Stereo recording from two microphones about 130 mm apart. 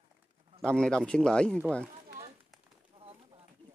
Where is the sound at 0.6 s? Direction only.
5° left (ahead or behind).